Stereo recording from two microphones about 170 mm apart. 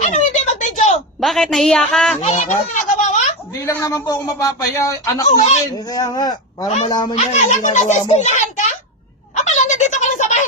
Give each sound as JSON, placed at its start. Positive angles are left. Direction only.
{"t": 0.0, "sound": "a sound", "side_deg": 45}
{"t": 1.2, "sound": "a woman's voice", "side_deg": 0}
{"t": 2.2, "sound": "speech", "side_deg": 45}
{"t": 3.0, "sound": "a sound", "side_deg": 45}
{"t": 3.7, "sound": "speech", "side_deg": 20}
{"t": 5.3, "sound": "speech", "side_deg": 40}
{"t": 5.9, "sound": "speech", "side_deg": 25}
{"t": 6.7, "sound": "speech", "side_deg": 35}
{"t": 6.9, "sound": "speech", "side_deg": 25}
{"t": 7.2, "sound": "speech", "side_deg": 45}
{"t": 9.3, "sound": "a sound", "side_deg": 45}